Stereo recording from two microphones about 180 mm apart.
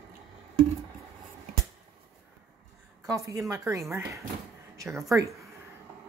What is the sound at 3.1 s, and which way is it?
Speech, 15° right (ahead or behind).